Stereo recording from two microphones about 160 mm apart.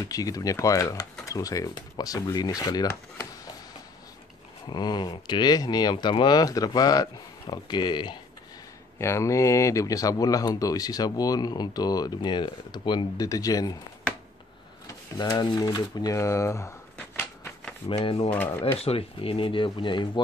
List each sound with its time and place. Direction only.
0.0 s speech: 20° left (ahead or behind)
4.6 s speech: 25° left (ahead or behind)
8.9 s speech: 15° left (ahead or behind)
14.9 s speech: 20° left (ahead or behind)
17.2 s a sound: 10° left (ahead or behind)
17.8 s speech: 35° left (ahead or behind)
18.3 s speech: 10° left (ahead or behind)
18.8 s speech: 40° left (ahead or behind)